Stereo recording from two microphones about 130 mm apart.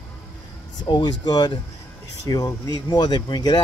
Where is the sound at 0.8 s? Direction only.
35° left (ahead or behind).